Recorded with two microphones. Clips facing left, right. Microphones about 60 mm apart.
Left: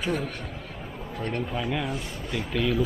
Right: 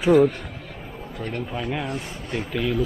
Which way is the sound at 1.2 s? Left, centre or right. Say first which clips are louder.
Even; centre.